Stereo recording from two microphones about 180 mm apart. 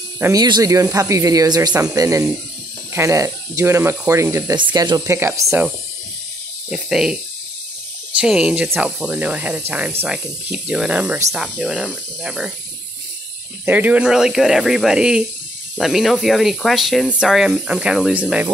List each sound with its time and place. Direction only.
0.2 s speech: 20° right (ahead or behind)
6.7 s speech: 5° right (ahead or behind)
8.2 s speech: 5° right (ahead or behind)
13.7 s speech: 10° right (ahead or behind)